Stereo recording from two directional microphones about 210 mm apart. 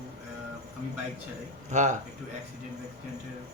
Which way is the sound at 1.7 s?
35° right (ahead or behind).